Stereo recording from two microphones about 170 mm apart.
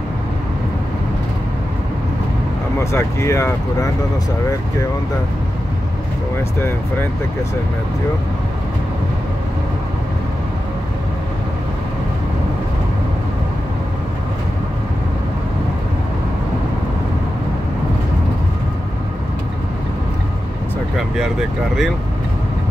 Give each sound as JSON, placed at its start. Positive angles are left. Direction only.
{"t": 2.8, "sound": "speech", "side_deg": 15}